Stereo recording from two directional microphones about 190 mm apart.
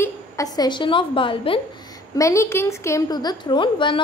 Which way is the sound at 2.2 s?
15° left (ahead or behind).